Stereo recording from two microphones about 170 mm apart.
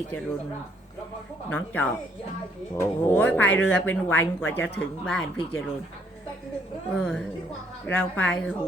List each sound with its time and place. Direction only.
1.5 s speech: 10° left (ahead or behind)
7.0 s speech: 5° left (ahead or behind)